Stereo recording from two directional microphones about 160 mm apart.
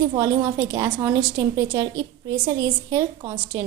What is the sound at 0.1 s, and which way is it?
A woman's voice, 20° right (ahead or behind).